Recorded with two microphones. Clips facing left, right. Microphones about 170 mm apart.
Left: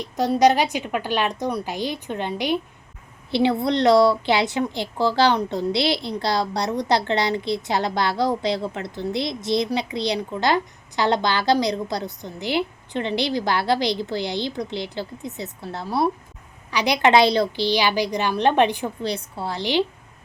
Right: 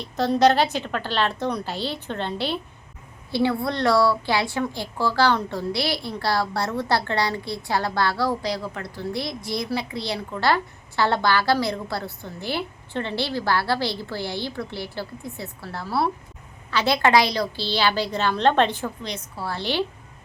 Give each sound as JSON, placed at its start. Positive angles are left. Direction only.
{"t": 0.0, "sound": "a woman's voice", "side_deg": 15}
{"t": 19.0, "sound": "a woman's voice", "side_deg": 35}
{"t": 19.5, "sound": "a woman's voice", "side_deg": 15}